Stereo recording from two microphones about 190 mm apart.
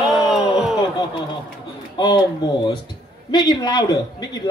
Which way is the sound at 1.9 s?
25° left (ahead or behind).